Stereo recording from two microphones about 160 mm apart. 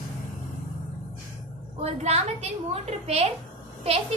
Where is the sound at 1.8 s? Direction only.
40° right (ahead or behind).